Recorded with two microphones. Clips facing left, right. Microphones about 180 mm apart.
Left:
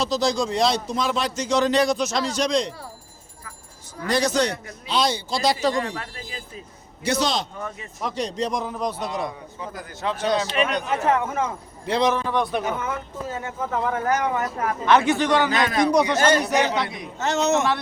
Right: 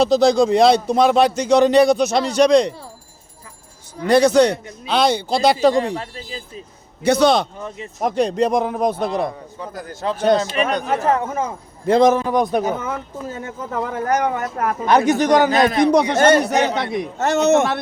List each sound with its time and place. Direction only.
0.0 s a man's voice: 60° right (ahead or behind)
4.0 s a man's voice: 60° right (ahead or behind)
5.7 s speech: 30° right (ahead or behind)
7.0 s a man's voice: 60° right (ahead or behind)
9.7 s a man's voice: 40° right (ahead or behind)
15.9 s a man's voice: 60° right (ahead or behind)